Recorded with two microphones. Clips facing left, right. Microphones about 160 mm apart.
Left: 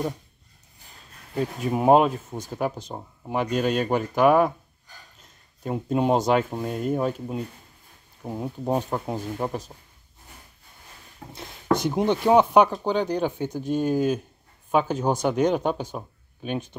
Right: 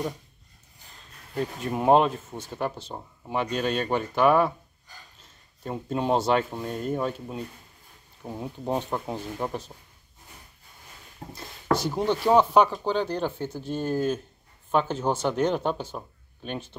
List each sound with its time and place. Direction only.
1.3 s speech: 5° left (ahead or behind)
5.6 s speech: 10° left (ahead or behind)
11.2 s speech: 30° right (ahead or behind)
11.7 s speech: 15° left (ahead or behind)